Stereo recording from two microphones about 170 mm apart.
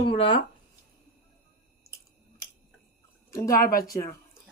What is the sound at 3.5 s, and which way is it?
Speech, 55° left (ahead or behind).